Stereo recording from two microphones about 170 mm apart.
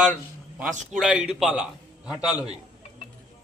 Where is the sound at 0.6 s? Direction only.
5° right (ahead or behind).